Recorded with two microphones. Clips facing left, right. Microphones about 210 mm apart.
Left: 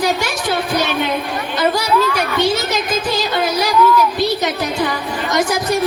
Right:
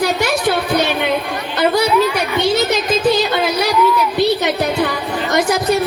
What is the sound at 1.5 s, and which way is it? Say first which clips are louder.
Chatter: right 3 dB; 60° right (ahead or behind).